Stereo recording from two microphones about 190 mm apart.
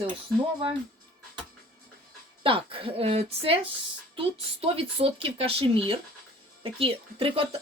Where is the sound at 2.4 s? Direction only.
25° right (ahead or behind).